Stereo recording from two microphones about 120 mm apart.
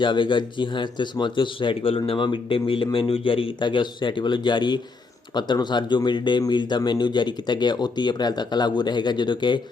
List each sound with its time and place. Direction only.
0.0 s speech: 40° left (ahead or behind)